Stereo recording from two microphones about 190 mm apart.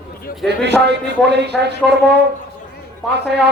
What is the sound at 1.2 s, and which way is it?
Speech, 65° right (ahead or behind).